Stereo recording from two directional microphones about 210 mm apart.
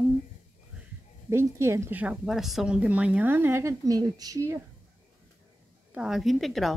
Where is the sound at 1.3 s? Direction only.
15° right (ahead or behind).